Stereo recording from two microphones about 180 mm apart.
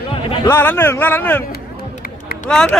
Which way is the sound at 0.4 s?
10° left (ahead or behind).